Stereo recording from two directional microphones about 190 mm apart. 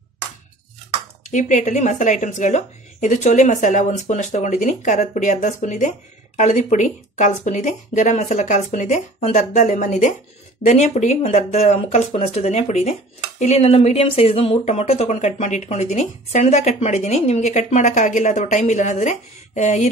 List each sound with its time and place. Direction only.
1.3 s a woman's voice: 40° left (ahead or behind)